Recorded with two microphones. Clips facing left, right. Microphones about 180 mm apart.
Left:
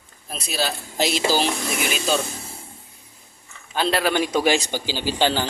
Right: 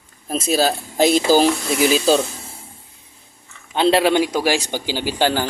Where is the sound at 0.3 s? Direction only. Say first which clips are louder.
Right 9 dB; 45° right (ahead or behind).